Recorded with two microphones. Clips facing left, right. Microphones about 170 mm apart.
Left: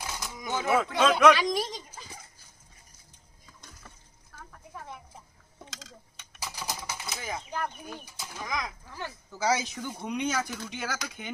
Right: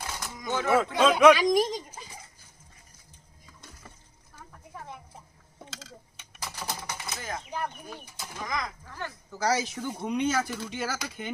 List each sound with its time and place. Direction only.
0.4 s speech: 10° left (ahead or behind)
0.8 s speech: 5° right (ahead or behind)
1.4 s speech: 45° right (ahead or behind)
5.7 s typing: 5° right (ahead or behind)
6.6 s typewriter: 10° left (ahead or behind)
7.6 s speech: 10° right (ahead or behind)
8.1 s speech: 5° left (ahead or behind)